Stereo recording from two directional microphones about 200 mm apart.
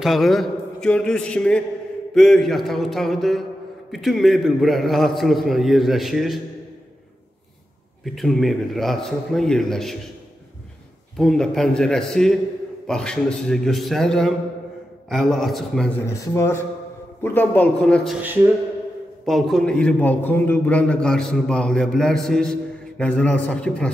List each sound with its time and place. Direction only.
0.0 s a man's voice: centre (ahead or behind)
8.0 s a man's voice: centre (ahead or behind)
11.1 s a man's voice: 5° left (ahead or behind)
16.1 s a man's voice: 15° left (ahead or behind)
19.2 s a man's voice: centre (ahead or behind)